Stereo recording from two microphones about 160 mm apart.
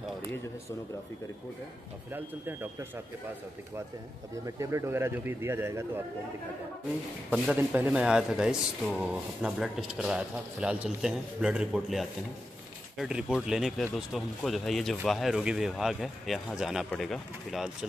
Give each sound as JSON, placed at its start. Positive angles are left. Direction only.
{"t": 2.1, "sound": "speech", "side_deg": -15}
{"t": 4.5, "sound": "speech", "side_deg": -20}
{"t": 7.2, "sound": "speech", "side_deg": -10}